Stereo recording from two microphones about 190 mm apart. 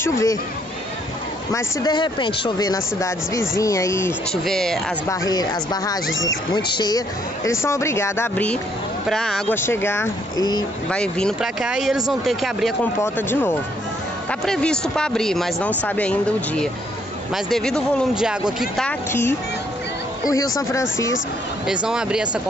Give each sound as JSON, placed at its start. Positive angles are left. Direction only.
{"t": 0.0, "sound": "speech", "side_deg": 20}
{"t": 1.5, "sound": "speech", "side_deg": 20}
{"t": 4.5, "sound": "speech", "side_deg": 0}
{"t": 5.3, "sound": "speech", "side_deg": 20}
{"t": 10.9, "sound": "speech", "side_deg": 5}
{"t": 13.0, "sound": "speech", "side_deg": 10}
{"t": 20.2, "sound": "speech", "side_deg": 20}
{"t": 21.6, "sound": "speech", "side_deg": -5}